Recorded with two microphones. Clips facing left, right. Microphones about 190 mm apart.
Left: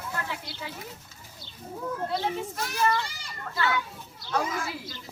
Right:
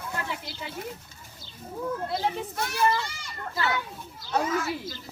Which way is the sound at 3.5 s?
35° right (ahead or behind).